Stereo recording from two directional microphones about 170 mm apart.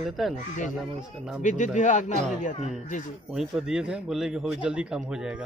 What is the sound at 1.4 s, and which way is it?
Speech, 45° left (ahead or behind).